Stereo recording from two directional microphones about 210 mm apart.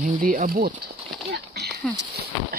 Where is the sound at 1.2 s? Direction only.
50° right (ahead or behind).